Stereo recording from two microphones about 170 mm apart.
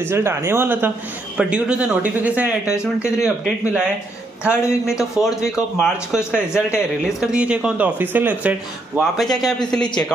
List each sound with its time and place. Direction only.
0.0 s a man's voice: 15° right (ahead or behind)
2.7 s speech: 15° left (ahead or behind)
3.3 s a man's voice: 5° right (ahead or behind)